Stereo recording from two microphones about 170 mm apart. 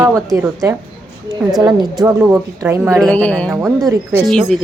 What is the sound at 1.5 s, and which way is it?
A woman's voice, 20° right (ahead or behind).